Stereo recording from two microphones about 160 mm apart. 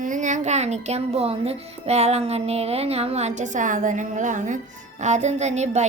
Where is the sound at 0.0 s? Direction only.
50° right (ahead or behind).